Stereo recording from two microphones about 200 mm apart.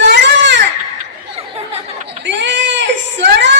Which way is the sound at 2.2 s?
60° right (ahead or behind).